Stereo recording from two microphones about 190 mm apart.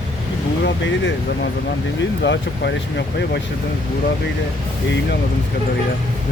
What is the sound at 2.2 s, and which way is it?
Speech, 65° left (ahead or behind).